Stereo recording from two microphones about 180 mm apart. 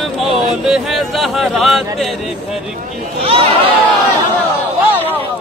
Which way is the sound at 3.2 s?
35° right (ahead or behind).